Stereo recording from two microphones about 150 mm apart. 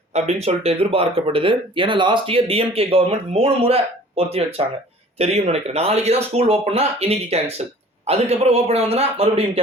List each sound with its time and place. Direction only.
0.1 s speech: 45° right (ahead or behind)